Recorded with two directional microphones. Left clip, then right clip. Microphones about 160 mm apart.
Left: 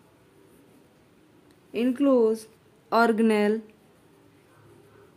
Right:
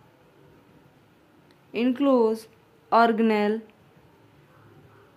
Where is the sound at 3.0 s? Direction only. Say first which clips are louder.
Right 1 dB; 20° left (ahead or behind).